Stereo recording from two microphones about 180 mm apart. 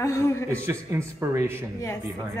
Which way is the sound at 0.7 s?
15° right (ahead or behind).